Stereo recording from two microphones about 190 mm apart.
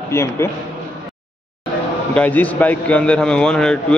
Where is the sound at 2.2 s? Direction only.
10° left (ahead or behind).